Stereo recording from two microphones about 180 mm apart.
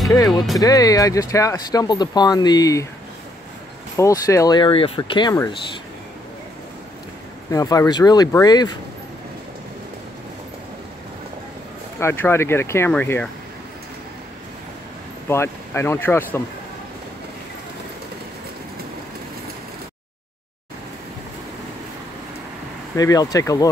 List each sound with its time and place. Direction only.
0.1 s speech: 20° left (ahead or behind)
3.9 s speech: 15° left (ahead or behind)
7.5 s speech: 20° left (ahead or behind)
12.0 s speech: 15° left (ahead or behind)
15.2 s speech: 15° left (ahead or behind)
22.9 s speech: 20° left (ahead or behind)